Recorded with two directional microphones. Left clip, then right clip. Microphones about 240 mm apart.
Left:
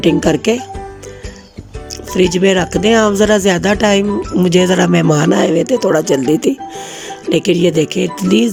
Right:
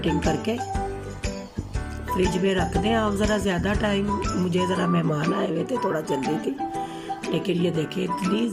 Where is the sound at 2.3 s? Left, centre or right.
Left.